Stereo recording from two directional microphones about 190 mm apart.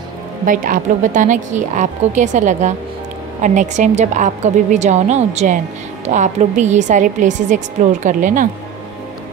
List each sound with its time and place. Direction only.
0.5 s a woman's voice: 45° right (ahead or behind)